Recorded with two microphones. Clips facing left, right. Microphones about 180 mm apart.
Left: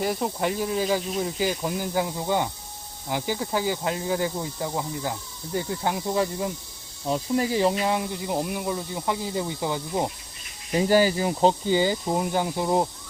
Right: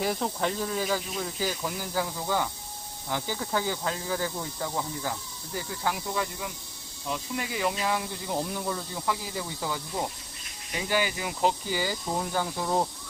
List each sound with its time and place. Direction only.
0.0 s speech: centre (ahead or behind); by 10.1 s 25° left (ahead or behind)
10.8 s speech: 40° left (ahead or behind); by 12.9 s 20° left (ahead or behind)